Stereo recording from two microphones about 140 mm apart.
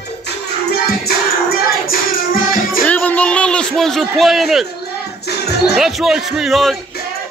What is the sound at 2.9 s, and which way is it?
A man's voice, 10° left (ahead or behind).